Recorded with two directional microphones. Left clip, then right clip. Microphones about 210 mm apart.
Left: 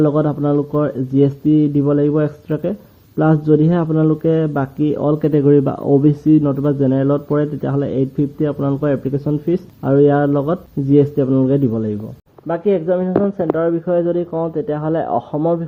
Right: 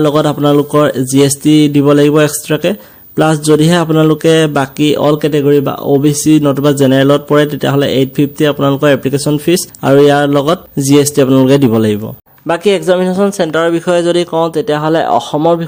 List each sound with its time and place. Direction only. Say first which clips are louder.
0.0 s speech: right 6 dB; 20° right (ahead or behind)
5.2 s speech: right 4 dB; 5° right (ahead or behind); by 11.6 s 25° right (ahead or behind)
11.7 s speech: right 10 dB; 35° right (ahead or behind); by 15.6 s 15° right (ahead or behind)